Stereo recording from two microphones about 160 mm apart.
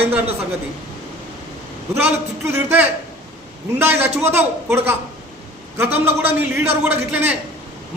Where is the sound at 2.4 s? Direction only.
15° right (ahead or behind).